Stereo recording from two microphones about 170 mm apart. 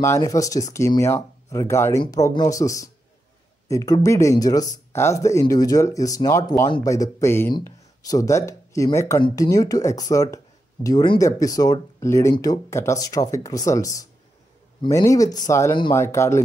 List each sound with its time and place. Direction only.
0.0 s speech: 15° left (ahead or behind)